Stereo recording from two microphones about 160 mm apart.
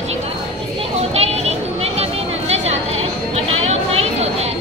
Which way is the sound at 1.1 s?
40° right (ahead or behind).